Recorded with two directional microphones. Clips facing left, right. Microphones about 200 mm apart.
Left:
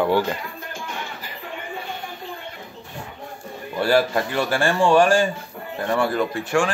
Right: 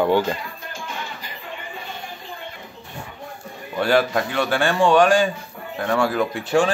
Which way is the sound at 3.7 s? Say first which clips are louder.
Even; 5° left (ahead or behind).